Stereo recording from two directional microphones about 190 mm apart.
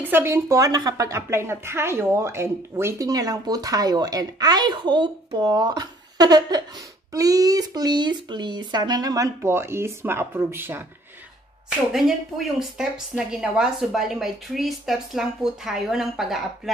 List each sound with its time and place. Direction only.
0.0 s speech: 10° right (ahead or behind)
11.9 s a woman's voice: centre (ahead or behind)